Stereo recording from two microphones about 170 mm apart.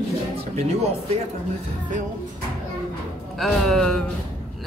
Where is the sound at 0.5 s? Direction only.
40° right (ahead or behind).